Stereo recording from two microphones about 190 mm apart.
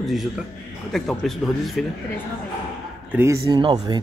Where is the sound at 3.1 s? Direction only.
15° right (ahead or behind).